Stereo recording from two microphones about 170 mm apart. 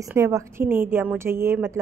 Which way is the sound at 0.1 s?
15° right (ahead or behind).